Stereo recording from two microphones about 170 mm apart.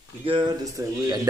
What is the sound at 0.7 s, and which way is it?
Speech, 20° right (ahead or behind).